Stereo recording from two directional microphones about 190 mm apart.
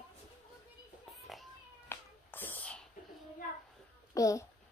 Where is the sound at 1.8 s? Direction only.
10° left (ahead or behind).